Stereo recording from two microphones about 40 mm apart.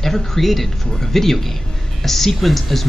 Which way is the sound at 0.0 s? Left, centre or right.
Centre.